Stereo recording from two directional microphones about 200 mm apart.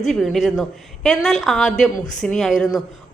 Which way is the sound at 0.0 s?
Centre (ahead or behind).